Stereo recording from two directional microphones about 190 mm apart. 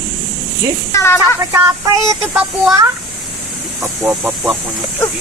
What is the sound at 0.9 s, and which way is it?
Speech, 15° left (ahead or behind).